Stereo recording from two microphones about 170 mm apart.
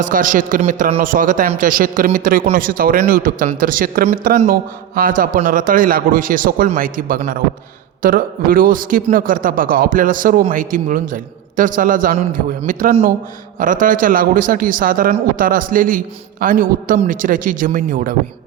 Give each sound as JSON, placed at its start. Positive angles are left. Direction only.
{"t": 0.0, "sound": "a man's voice", "side_deg": -50}